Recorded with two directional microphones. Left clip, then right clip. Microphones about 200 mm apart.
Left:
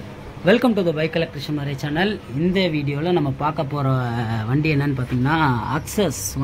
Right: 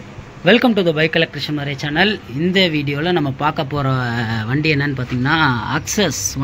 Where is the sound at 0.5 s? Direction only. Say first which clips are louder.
Right 4 dB; 5° right (ahead or behind).